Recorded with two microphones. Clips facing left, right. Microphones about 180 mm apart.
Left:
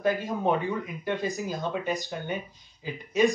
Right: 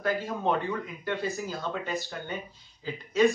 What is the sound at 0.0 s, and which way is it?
Speech, 15° left (ahead or behind).